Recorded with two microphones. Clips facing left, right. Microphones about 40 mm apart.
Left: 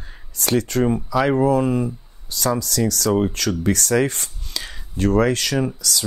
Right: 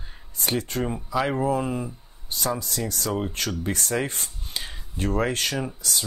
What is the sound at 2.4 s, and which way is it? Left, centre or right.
Speech, left.